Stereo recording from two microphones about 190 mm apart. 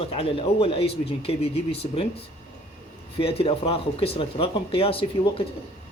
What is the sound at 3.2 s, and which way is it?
Speech, 30° left (ahead or behind).